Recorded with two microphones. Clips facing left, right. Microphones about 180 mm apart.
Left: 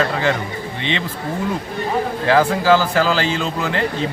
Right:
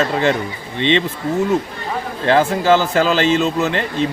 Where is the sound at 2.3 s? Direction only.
20° right (ahead or behind).